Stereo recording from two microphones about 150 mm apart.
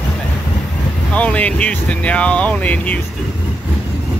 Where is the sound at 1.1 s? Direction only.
10° left (ahead or behind).